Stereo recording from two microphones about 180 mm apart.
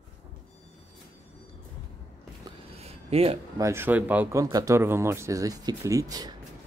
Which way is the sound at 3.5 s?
15° right (ahead or behind).